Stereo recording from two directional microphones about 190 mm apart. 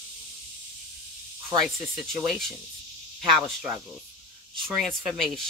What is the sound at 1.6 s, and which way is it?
Speech, centre (ahead or behind).